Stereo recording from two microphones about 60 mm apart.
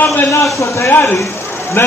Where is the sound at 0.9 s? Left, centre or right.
Left.